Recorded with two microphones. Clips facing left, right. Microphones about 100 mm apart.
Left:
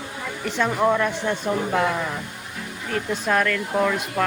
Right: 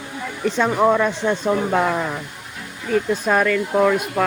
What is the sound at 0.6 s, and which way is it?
Speech, 20° right (ahead or behind).